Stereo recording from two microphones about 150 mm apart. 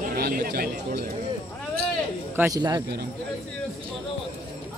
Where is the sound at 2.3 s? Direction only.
15° right (ahead or behind).